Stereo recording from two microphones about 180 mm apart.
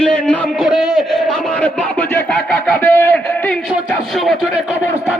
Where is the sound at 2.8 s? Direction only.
10° left (ahead or behind).